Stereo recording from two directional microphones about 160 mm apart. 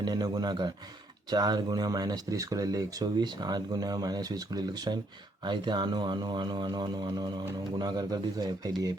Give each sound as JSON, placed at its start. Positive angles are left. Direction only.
{"t": 0.0, "sound": "speech", "side_deg": -25}